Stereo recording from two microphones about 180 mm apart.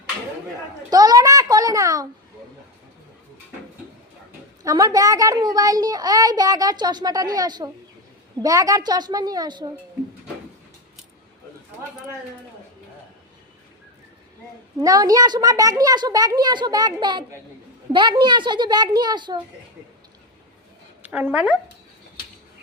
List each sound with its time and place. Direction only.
0.9 s a child's voice: 20° right (ahead or behind)
4.6 s a child's voice: 20° right (ahead or behind)
14.8 s a child's voice: 20° right (ahead or behind)
21.0 s speech: 10° right (ahead or behind)